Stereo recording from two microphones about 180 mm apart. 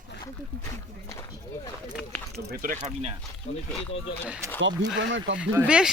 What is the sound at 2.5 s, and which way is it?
Speech, 50° right (ahead or behind).